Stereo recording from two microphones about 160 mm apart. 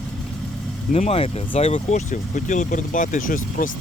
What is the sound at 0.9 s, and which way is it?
Speech, 40° left (ahead or behind).